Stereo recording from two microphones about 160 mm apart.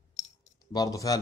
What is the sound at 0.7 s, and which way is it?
Speech, 20° left (ahead or behind).